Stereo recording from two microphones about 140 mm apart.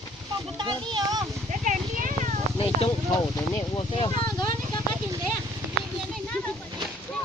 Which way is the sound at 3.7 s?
35° left (ahead or behind).